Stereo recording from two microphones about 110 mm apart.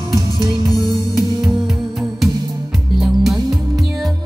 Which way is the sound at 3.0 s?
Centre (ahead or behind).